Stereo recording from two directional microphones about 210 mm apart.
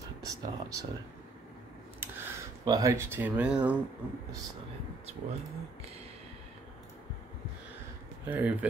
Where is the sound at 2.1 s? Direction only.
15° right (ahead or behind).